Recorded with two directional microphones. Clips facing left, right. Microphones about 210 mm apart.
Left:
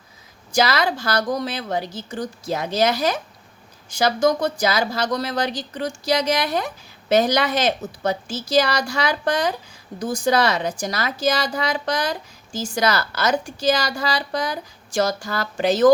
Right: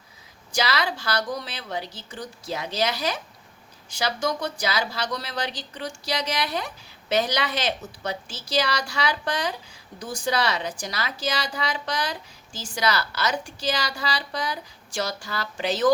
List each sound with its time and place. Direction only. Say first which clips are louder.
0.5 s a woman's voice: left 6 dB; 45° left (ahead or behind)